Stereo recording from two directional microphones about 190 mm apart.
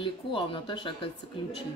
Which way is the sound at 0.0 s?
25° left (ahead or behind).